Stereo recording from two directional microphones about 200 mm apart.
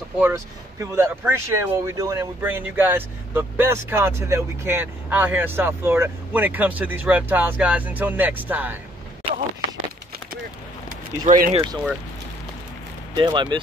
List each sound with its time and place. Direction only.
0.2 s speech: 10° right (ahead or behind)
11.2 s speech: 45° right (ahead or behind)
11.5 s speech: 20° right (ahead or behind)
13.1 s speech: 25° right (ahead or behind)